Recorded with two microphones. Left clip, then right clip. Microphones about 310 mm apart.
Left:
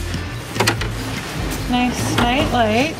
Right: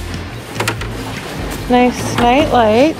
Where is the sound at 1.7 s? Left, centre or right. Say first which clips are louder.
Right 7 dB; centre.